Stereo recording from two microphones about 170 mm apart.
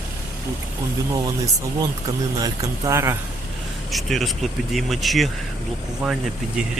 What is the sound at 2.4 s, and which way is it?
Speech, 20° right (ahead or behind).